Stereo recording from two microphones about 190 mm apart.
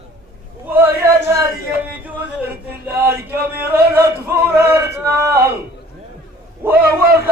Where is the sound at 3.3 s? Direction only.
10° right (ahead or behind).